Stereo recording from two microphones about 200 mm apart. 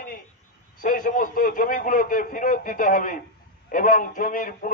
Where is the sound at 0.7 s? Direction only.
45° left (ahead or behind).